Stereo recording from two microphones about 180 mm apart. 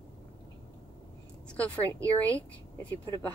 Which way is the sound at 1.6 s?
10° left (ahead or behind).